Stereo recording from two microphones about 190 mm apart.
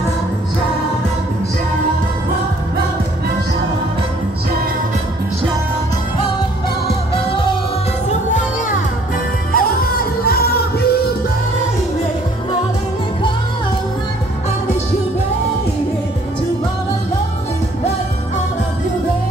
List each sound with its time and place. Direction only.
9.5 s music: 50° left (ahead or behind)